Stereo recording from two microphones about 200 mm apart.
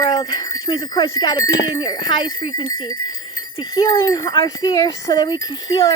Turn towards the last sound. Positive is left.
turn(degrees=20)  # may be behind; listen again after turning